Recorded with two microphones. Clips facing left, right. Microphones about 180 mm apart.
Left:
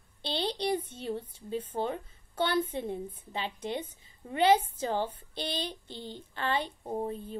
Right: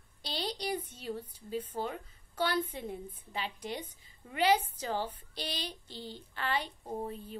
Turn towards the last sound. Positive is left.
turn(degrees=30)  # may be behind; listen again after turning